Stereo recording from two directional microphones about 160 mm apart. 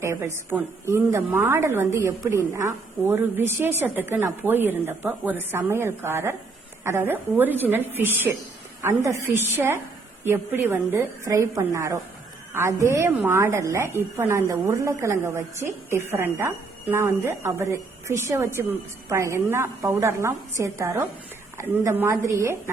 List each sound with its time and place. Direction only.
0.0 s a woman's voice: 15° right (ahead or behind)